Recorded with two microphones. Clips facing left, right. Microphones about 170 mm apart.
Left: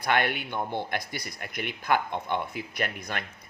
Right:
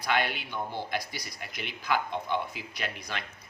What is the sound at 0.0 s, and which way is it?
Speech, 55° left (ahead or behind).